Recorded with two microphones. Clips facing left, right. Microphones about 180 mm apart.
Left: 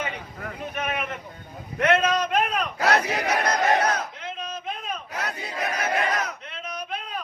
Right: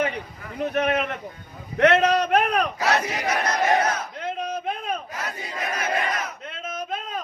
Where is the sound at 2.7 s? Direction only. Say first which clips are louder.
Left 1 dB; 60° left (ahead or behind).